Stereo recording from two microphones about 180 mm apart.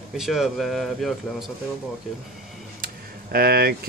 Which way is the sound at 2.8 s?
55° right (ahead or behind).